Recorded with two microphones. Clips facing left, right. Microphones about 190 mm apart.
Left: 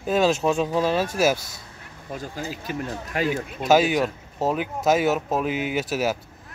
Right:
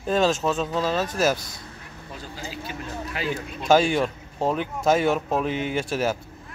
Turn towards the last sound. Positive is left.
turn(degrees=5)  # may be behind; listen again after turning